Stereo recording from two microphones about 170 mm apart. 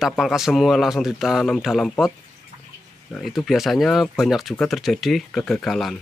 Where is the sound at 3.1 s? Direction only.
Centre (ahead or behind).